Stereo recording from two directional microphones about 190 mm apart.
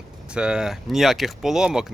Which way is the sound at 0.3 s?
5° right (ahead or behind).